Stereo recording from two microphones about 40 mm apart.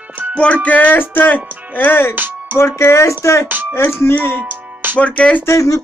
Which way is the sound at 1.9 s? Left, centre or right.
Left.